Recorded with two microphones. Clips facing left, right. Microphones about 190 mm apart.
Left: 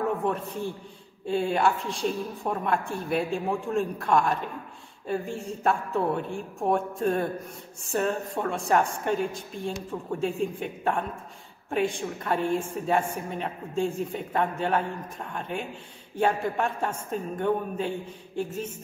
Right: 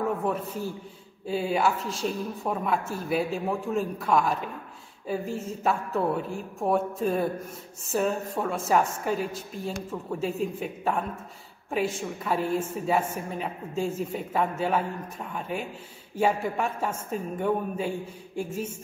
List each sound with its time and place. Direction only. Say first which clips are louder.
0.3 s a woman's voice: even; 5° right (ahead or behind)